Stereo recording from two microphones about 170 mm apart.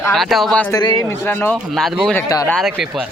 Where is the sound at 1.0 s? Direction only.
15° left (ahead or behind).